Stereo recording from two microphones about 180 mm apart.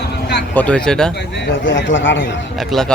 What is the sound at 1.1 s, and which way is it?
Speech, 75° left (ahead or behind).